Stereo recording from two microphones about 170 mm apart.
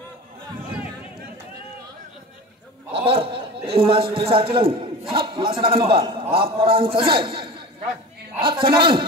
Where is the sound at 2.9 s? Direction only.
30° right (ahead or behind).